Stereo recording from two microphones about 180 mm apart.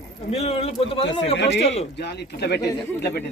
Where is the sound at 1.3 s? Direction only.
75° left (ahead or behind).